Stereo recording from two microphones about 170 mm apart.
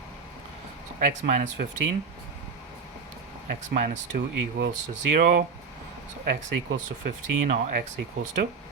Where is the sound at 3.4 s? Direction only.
60° right (ahead or behind).